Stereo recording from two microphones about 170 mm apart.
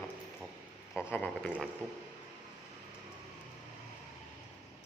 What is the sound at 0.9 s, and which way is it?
Speech, 15° left (ahead or behind).